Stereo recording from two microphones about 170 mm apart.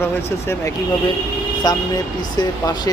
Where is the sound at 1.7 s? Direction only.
20° left (ahead or behind).